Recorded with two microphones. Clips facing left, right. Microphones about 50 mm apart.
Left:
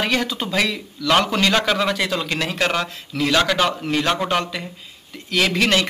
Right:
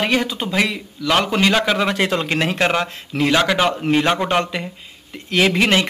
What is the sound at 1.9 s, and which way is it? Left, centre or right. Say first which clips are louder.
A man's voice: right 3 dB; right.